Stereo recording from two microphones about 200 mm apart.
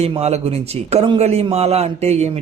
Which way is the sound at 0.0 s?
30° right (ahead or behind).